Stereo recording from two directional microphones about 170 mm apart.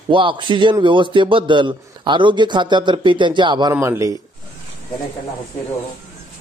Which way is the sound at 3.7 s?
15° right (ahead or behind).